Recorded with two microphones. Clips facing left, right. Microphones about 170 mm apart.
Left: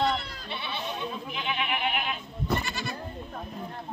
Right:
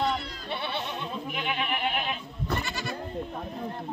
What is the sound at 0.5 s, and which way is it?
Goat, 55° right (ahead or behind).